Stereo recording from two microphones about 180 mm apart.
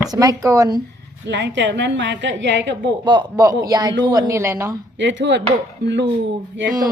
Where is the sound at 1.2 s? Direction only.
80° right.